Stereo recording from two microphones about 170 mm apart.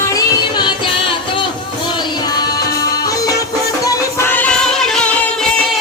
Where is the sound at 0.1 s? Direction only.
25° left (ahead or behind).